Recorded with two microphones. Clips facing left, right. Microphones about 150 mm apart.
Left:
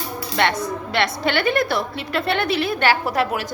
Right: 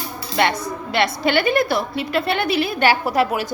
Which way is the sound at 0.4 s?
5° right (ahead or behind).